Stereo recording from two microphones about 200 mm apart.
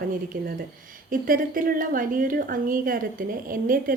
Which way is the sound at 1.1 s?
45° right (ahead or behind).